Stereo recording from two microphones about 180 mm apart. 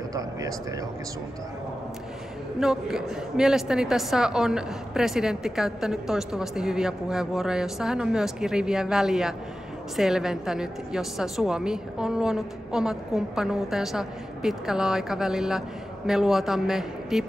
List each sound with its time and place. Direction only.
0.1 s speech: 20° right (ahead or behind)
2.6 s a woman's voice: 5° right (ahead or behind)